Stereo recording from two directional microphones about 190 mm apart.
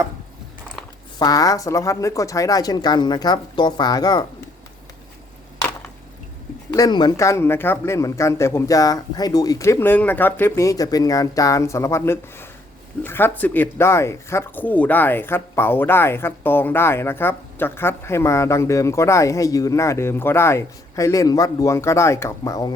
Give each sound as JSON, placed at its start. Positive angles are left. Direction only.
{"t": 1.2, "sound": "speech", "side_deg": 20}
{"t": 6.7, "sound": "speech", "side_deg": 20}